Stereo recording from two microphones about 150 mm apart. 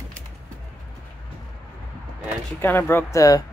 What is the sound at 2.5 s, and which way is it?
Speech, 15° left (ahead or behind).